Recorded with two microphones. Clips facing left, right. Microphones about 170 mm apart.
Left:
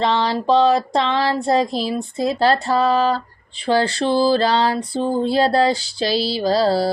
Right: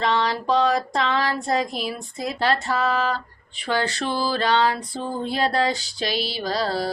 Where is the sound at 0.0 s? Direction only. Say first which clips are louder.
Left 4 dB; 30° left (ahead or behind).